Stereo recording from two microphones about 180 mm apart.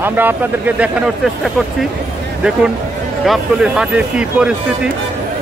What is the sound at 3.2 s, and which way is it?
Speech, 5° right (ahead or behind).